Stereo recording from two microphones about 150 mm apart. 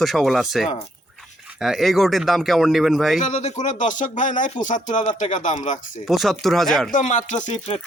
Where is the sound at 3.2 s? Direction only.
50° left (ahead or behind).